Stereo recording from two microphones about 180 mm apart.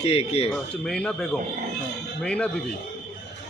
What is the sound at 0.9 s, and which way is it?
Speech, 5° left (ahead or behind).